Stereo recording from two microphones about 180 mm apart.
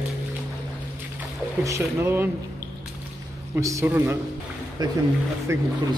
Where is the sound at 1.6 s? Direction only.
15° right (ahead or behind).